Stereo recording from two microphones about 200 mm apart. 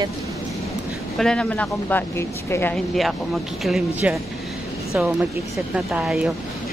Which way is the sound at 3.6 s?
Centre (ahead or behind).